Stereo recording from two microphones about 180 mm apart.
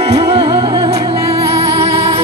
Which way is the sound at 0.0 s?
30° right (ahead or behind).